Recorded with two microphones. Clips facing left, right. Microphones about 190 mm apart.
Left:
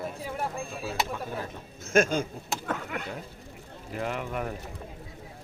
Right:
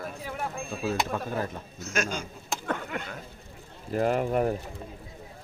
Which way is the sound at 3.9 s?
40° right (ahead or behind).